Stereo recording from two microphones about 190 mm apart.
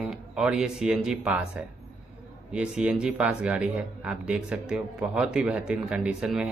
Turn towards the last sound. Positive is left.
turn(degrees=-5)  # may be behind; listen again after turning